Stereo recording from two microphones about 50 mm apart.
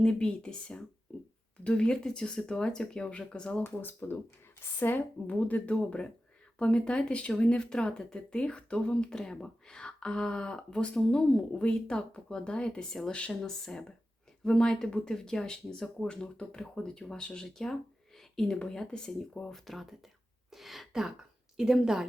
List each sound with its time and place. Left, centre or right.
0.0 s speech: centre
3.6 s speech: left; by 19.5 s centre
19.5 s a sound: centre
21.5 s speech: centre